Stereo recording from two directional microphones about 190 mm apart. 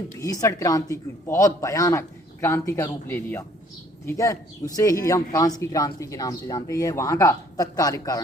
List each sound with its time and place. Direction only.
0.2 s speech: 15° left (ahead or behind)